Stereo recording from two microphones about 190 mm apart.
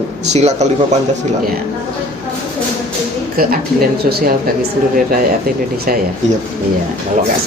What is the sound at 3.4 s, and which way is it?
Speech, 50° right (ahead or behind).